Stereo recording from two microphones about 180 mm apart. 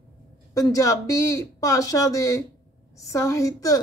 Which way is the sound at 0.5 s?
20° left (ahead or behind).